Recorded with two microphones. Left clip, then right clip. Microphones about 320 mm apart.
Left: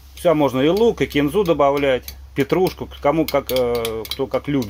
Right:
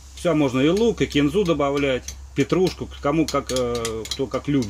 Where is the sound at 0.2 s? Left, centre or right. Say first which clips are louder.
Left 4 dB; centre.